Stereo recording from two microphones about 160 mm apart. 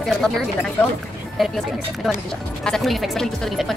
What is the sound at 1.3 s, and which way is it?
Speech, centre (ahead or behind).